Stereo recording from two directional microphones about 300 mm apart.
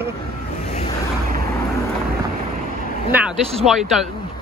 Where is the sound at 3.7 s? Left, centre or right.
Centre.